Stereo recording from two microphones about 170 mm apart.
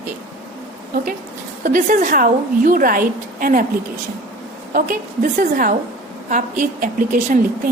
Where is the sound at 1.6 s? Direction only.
55° right (ahead or behind).